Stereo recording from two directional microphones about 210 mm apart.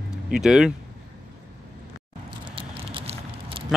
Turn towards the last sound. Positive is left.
turn(degrees=-25)  # may be behind; listen again after turning